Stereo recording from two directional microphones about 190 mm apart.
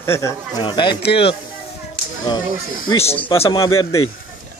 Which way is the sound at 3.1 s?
15° left (ahead or behind).